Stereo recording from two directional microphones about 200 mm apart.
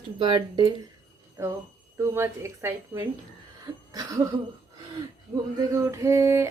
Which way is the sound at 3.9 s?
15° right (ahead or behind).